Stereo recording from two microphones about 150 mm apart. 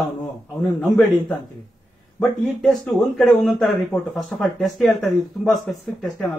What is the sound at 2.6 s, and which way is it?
Speech, 5° left (ahead or behind).